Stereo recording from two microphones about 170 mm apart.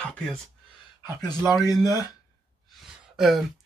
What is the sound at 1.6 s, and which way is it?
Speech, 20° left (ahead or behind).